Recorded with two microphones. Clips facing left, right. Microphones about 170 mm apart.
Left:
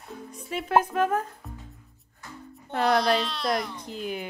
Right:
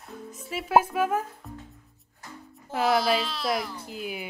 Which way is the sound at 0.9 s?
5° right (ahead or behind).